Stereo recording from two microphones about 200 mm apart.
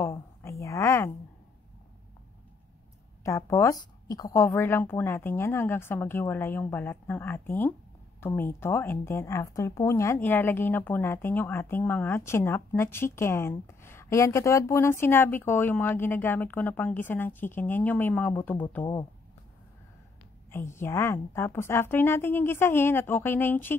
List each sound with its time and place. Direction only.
0.0 s a sound: 15° left (ahead or behind)
3.3 s a woman's voice: 15° left (ahead or behind)
20.5 s a woman's voice: 15° left (ahead or behind)